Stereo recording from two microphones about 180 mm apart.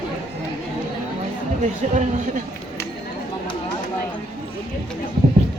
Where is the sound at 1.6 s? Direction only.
45° right (ahead or behind).